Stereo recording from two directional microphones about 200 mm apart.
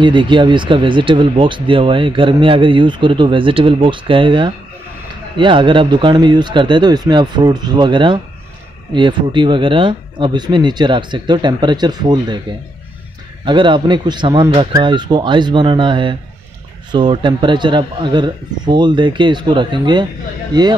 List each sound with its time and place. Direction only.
0.0 s speech: 25° right (ahead or behind)
13.5 s speech: 25° right (ahead or behind)